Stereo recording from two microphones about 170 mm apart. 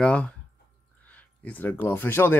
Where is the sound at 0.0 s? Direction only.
5° left (ahead or behind).